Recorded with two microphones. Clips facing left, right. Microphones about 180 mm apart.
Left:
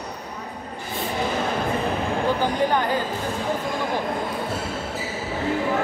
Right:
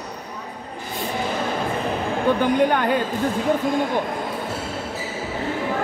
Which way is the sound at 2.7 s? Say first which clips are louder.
Right 2 dB; 60° right (ahead or behind).